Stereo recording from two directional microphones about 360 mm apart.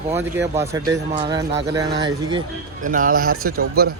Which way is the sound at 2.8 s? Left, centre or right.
Right.